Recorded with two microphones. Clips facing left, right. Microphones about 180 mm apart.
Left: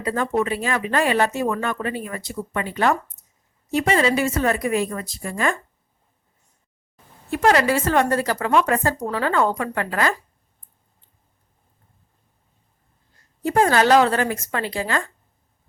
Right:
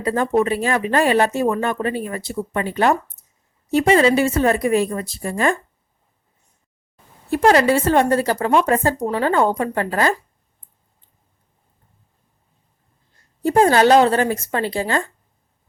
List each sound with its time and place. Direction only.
0.0 s speech: 35° right (ahead or behind)
7.3 s speech: 35° right (ahead or behind)
13.4 s speech: 30° right (ahead or behind)